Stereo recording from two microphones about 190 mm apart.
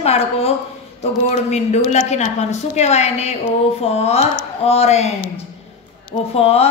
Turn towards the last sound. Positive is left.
turn(degrees=30)  # may be behind; listen again after turning